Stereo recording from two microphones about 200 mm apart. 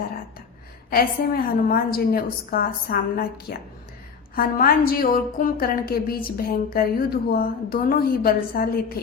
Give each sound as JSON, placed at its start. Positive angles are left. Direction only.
{"t": 0.9, "sound": "a woman's voice", "side_deg": 50}